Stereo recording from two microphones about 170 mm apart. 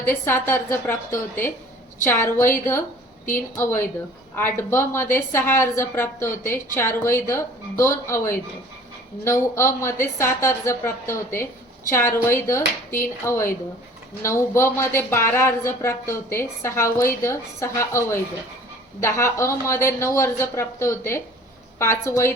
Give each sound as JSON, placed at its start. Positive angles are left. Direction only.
{"t": 0.0, "sound": "a woman's voice", "side_deg": 15}